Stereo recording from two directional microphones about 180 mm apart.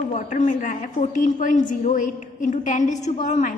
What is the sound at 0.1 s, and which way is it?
A woman's voice, 45° left (ahead or behind).